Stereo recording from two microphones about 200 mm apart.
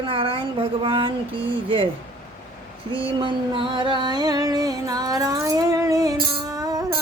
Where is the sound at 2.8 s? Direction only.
25° right (ahead or behind).